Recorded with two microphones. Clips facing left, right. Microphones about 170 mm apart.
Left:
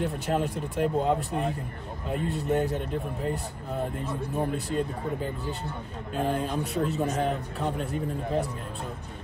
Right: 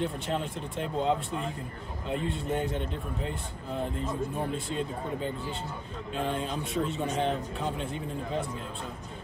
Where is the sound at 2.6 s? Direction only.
5° left (ahead or behind).